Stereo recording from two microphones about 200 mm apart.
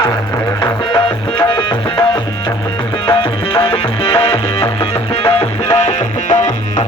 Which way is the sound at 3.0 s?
25° left (ahead or behind).